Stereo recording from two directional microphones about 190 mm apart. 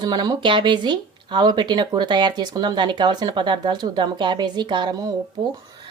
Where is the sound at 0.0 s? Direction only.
20° right (ahead or behind).